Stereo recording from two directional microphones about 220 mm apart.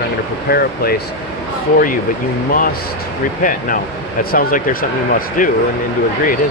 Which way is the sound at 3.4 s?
40° left (ahead or behind).